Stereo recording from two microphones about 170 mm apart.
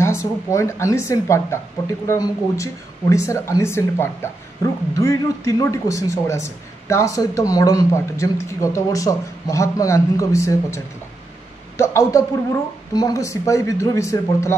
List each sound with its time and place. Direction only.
0.0 s a man's voice: 15° left (ahead or behind)